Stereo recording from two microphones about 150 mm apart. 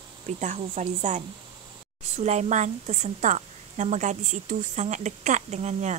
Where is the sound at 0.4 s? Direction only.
55° right (ahead or behind).